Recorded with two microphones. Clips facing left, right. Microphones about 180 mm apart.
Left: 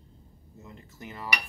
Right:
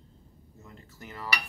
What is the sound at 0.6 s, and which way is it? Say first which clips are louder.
Dishes: left 3 dB; 20° left (ahead or behind).